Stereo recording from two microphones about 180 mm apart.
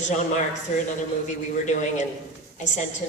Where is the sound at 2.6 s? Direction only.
40° left (ahead or behind).